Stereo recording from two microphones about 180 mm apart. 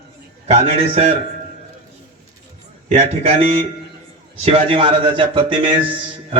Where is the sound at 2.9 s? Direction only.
35° right (ahead or behind).